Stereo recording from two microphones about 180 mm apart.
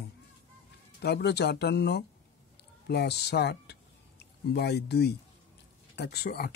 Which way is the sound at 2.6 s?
65° left (ahead or behind).